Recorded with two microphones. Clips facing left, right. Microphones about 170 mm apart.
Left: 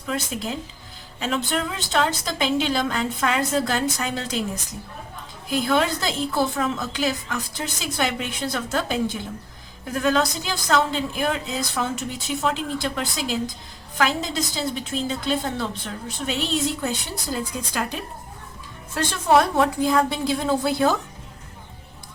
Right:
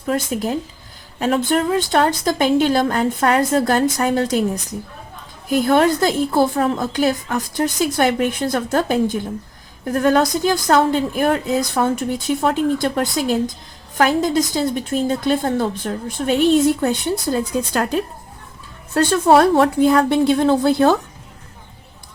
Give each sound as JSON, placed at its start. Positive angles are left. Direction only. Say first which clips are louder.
{"t": 0.0, "sound": "speech", "louder": "right 7 dB", "side_deg": -45}
{"t": 5.5, "sound": "speech", "louder": "right 7 dB", "side_deg": -50}